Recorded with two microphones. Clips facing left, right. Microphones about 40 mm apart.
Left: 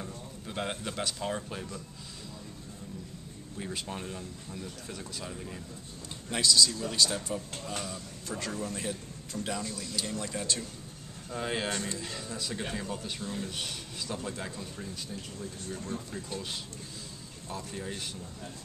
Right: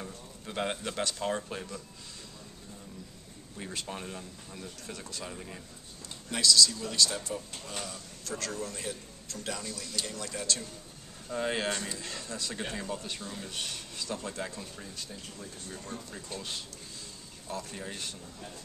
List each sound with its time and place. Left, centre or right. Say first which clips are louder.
0.0 s speech: left 1 dB; centre
3.5 s speech: left 1 dB; centre
6.3 s a man's voice: right 1 dB; centre
9.6 s speech: left 2 dB; centre
10.1 s a man's voice: left 2 dB; centre
11.2 s speech: right 2 dB; centre
17.7 s speech: left 2 dB; centre